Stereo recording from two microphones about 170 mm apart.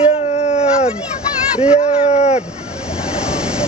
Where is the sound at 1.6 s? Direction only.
40° left (ahead or behind).